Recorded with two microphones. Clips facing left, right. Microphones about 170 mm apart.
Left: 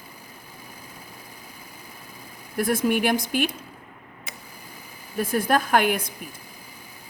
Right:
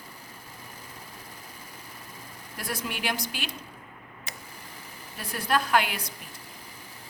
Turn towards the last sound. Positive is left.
turn(degrees=50)  # may be behind; listen again after turning